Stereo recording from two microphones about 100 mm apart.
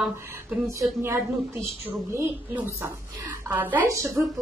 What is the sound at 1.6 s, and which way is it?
A woman's voice, 25° right (ahead or behind).